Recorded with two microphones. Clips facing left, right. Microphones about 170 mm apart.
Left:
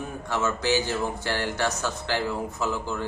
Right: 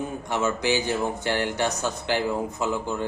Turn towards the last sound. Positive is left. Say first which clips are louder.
# right 2 dB
turn(degrees=-20)  # may be behind; listen again after turning